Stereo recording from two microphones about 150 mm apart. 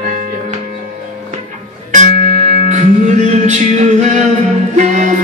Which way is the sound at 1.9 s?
55° right (ahead or behind).